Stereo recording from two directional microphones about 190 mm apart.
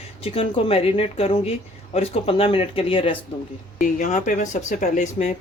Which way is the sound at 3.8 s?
45° left (ahead or behind).